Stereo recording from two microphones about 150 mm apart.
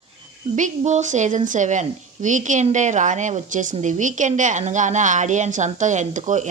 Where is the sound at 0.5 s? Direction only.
55° right (ahead or behind).